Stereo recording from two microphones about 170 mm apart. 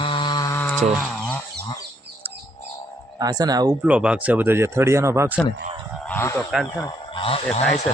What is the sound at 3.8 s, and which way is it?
Speech, 5° right (ahead or behind).